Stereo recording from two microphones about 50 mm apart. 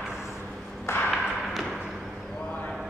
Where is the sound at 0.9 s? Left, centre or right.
Left.